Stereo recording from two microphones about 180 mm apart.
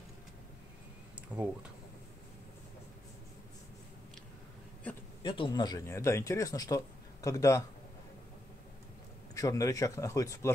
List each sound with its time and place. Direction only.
1.3 s speech: 10° right (ahead or behind)
5.2 s speech: 25° left (ahead or behind)
9.3 s speech: 20° left (ahead or behind)